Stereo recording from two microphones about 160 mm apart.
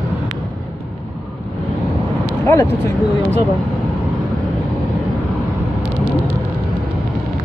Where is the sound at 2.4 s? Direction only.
15° left (ahead or behind).